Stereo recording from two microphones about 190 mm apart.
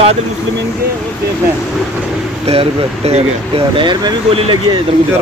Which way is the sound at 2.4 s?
35° right (ahead or behind).